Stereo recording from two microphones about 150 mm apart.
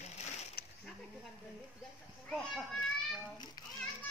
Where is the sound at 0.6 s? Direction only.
85° left.